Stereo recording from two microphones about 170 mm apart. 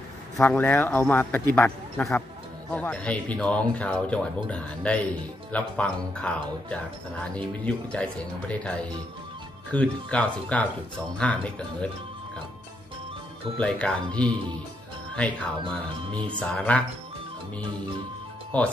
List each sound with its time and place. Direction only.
0.4 s speech: 10° left (ahead or behind)
13.6 s speech: 5° left (ahead or behind)
16.1 s speech: 30° right (ahead or behind)
16.3 s speech: 5° left (ahead or behind)
18.5 s speech: 10° left (ahead or behind)